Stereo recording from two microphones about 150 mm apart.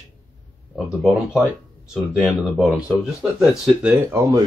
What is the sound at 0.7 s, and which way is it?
Speech, centre (ahead or behind).